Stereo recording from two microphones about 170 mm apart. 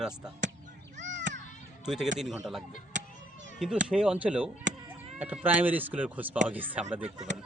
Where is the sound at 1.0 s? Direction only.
90° right.